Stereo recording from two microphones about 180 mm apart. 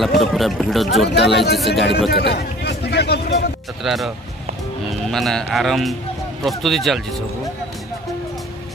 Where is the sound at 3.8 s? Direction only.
Centre (ahead or behind).